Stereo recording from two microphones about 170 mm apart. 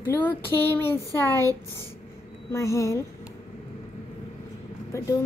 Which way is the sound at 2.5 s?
15° left (ahead or behind).